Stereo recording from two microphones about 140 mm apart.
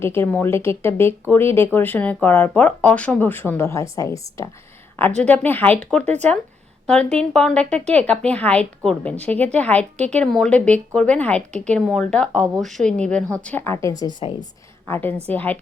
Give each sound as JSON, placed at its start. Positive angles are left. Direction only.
{"t": 0.0, "sound": "speech", "side_deg": 15}
{"t": 5.3, "sound": "a woman's voice", "side_deg": 15}
{"t": 14.8, "sound": "speech", "side_deg": 15}